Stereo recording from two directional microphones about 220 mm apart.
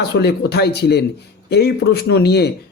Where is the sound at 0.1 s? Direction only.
50° left (ahead or behind).